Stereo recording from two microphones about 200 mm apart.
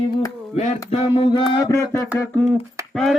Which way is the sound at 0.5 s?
30° left (ahead or behind).